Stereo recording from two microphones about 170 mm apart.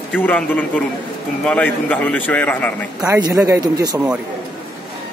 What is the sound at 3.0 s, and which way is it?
Speech, 20° right (ahead or behind).